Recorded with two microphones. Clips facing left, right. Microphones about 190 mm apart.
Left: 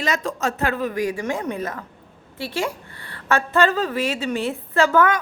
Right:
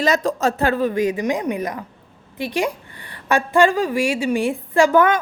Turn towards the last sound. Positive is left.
turn(degrees=-20)  # may be behind; listen again after turning